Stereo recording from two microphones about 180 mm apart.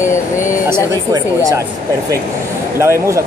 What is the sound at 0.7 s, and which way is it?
Speech, 20° right (ahead or behind).